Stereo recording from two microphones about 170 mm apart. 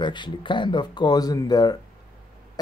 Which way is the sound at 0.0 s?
25° left (ahead or behind).